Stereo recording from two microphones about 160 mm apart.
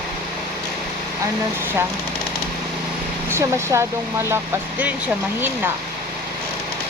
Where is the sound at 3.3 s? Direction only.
15° right (ahead or behind).